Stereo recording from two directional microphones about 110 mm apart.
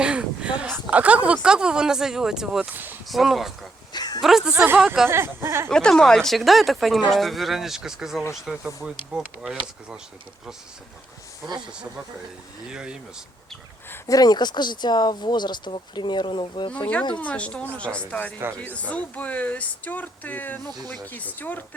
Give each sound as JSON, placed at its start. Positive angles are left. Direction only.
{"t": 0.0, "sound": "speech", "side_deg": -10}
{"t": 3.9, "sound": "a sound", "side_deg": 40}
{"t": 4.2, "sound": "speech", "side_deg": -5}
{"t": 4.5, "sound": "speech", "side_deg": -20}
{"t": 5.6, "sound": "speech", "side_deg": 5}
{"t": 12.7, "sound": "speech", "side_deg": -10}
{"t": 14.1, "sound": "speech", "side_deg": 35}
{"t": 17.2, "sound": "speech", "side_deg": 10}